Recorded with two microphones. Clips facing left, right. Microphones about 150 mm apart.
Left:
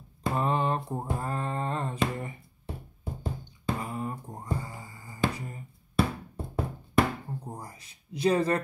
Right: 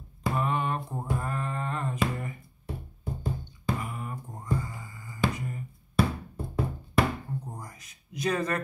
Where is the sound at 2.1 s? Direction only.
25° left (ahead or behind).